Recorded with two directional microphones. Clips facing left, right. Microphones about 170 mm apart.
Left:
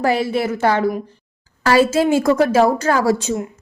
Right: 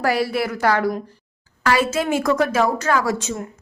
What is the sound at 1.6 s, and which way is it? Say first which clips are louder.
A woman's voice: left 5 dB; 30° left (ahead or behind).